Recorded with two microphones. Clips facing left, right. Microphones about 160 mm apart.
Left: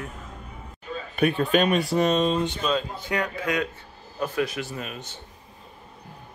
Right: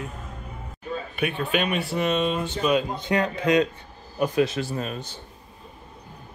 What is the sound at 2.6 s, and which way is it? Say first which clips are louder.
A man's voice: right 4 dB; 15° right (ahead or behind).